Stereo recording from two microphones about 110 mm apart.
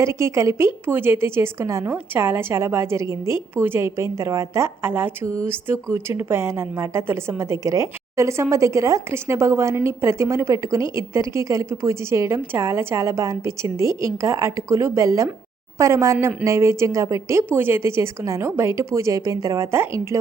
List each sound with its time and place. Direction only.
0.0 s a woman's voice: 25° right (ahead or behind)